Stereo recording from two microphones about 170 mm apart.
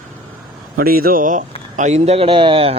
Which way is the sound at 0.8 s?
60° right (ahead or behind).